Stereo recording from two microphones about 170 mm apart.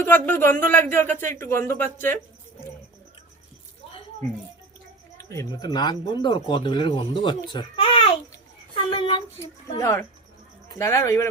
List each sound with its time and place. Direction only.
0.0 s speech: 10° left (ahead or behind)
5.3 s speech: 20° left (ahead or behind)
8.7 s a sound: 30° left (ahead or behind)
9.4 s speech: 15° left (ahead or behind)